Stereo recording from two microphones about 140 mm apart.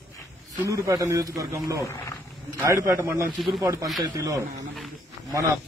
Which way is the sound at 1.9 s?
20° left (ahead or behind).